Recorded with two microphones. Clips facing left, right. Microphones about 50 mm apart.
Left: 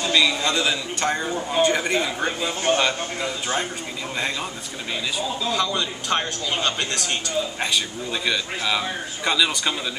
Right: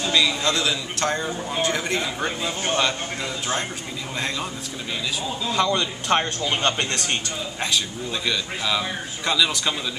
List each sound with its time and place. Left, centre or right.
0.1 s a man's voice: centre
5.5 s a man's voice: right
7.6 s a man's voice: centre